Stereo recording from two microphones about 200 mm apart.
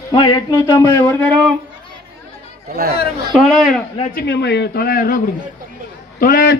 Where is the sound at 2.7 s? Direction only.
45° right (ahead or behind).